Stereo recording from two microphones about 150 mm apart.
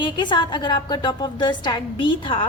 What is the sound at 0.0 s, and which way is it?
A woman's voice, 30° left (ahead or behind).